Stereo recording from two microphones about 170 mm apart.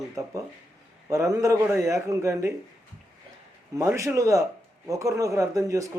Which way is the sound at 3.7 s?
20° right (ahead or behind).